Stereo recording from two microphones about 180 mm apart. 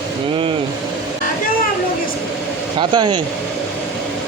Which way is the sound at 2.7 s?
25° right (ahead or behind).